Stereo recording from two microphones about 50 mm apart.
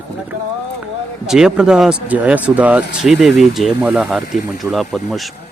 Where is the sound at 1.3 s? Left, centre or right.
Centre.